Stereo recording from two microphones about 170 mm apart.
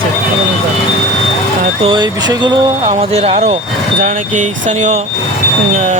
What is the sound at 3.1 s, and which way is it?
Speech, 40° right (ahead or behind).